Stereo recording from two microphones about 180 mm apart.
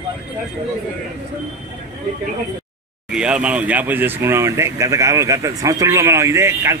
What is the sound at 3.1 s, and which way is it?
Speech, 5° right (ahead or behind).